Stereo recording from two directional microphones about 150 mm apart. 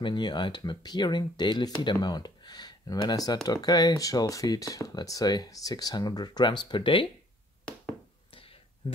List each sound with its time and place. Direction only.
0.0 s speech: 30° left (ahead or behind)
8.8 s speech: 30° left (ahead or behind)